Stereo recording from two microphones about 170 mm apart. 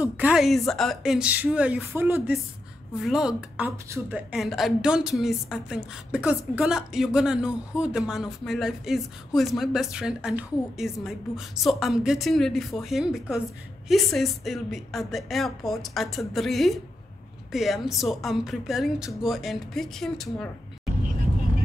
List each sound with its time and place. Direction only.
0.0 s a woman's voice: 5° right (ahead or behind)
3.0 s speech: centre (ahead or behind)